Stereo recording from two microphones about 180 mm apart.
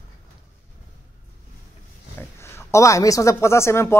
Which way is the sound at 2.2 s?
15° left (ahead or behind).